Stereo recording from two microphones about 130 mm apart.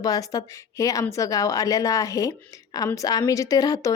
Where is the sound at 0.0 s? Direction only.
30° left (ahead or behind).